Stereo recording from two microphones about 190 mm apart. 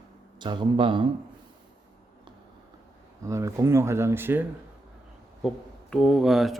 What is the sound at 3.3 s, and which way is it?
Speech, 15° right (ahead or behind).